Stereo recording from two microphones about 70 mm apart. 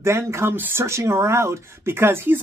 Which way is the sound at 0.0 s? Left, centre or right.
Right.